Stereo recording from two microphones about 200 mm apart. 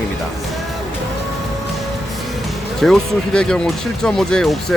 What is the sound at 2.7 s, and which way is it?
Speech, centre (ahead or behind).